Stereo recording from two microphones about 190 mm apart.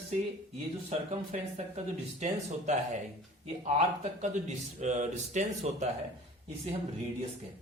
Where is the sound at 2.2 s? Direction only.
40° right (ahead or behind).